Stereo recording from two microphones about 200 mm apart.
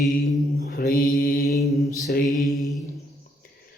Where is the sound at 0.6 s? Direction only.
45° left (ahead or behind).